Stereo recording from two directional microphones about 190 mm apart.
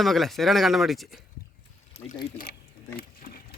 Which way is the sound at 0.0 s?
Centre (ahead or behind).